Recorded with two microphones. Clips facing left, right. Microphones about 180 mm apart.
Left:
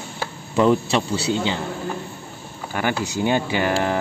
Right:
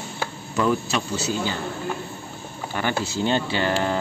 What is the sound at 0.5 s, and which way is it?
Speech, 25° left (ahead or behind).